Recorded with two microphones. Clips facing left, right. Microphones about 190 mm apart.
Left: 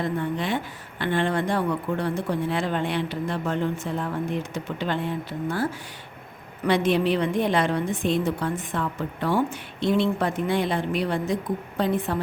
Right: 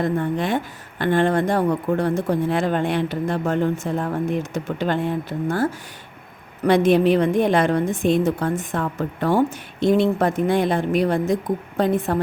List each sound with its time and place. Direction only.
0.0 s speech: 45° right (ahead or behind)
6.7 s speech: 45° right (ahead or behind)